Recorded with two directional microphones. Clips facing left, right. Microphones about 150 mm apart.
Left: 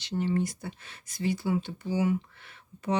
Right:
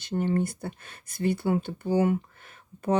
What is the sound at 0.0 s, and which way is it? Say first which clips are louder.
Speech: right 2 dB; 50° right (ahead or behind).